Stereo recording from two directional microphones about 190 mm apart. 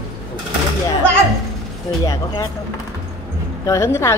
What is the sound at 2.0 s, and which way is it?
Speech, 20° left (ahead or behind).